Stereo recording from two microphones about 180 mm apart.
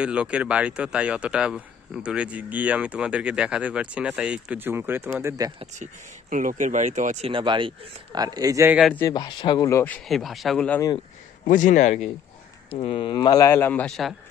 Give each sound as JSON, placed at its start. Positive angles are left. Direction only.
{"t": 0.0, "sound": "speech", "side_deg": -5}
{"t": 6.3, "sound": "speech", "side_deg": -45}
{"t": 9.1, "sound": "speech", "side_deg": 25}
{"t": 11.4, "sound": "a man's voice", "side_deg": 45}
{"t": 12.6, "sound": "a man's voice", "side_deg": 30}